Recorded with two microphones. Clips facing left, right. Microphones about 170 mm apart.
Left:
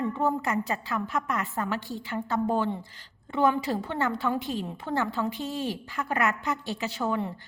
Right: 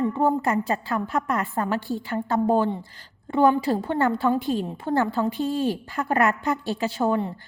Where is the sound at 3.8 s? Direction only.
50° right (ahead or behind).